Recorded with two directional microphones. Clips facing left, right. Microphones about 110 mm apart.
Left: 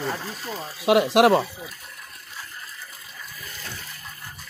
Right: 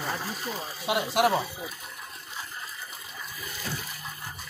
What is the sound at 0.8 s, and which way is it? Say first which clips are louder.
Speech: left 8 dB; 90° left.